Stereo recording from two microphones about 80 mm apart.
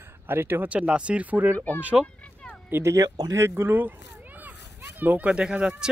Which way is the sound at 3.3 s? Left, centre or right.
Right.